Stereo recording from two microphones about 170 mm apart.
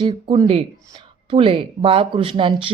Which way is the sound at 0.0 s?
30° right (ahead or behind).